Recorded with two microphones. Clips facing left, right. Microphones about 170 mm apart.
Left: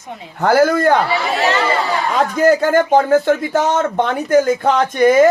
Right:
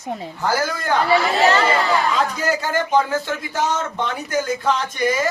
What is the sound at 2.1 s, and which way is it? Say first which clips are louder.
A man's voice: left 8 dB; 55° left (ahead or behind).